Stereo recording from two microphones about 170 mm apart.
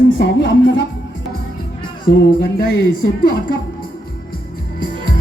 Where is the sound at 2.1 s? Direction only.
75° left (ahead or behind).